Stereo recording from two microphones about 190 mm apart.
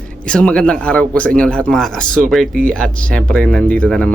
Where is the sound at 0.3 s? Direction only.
5° left (ahead or behind).